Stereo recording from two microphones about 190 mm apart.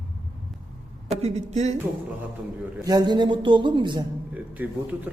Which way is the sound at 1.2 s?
35° right (ahead or behind).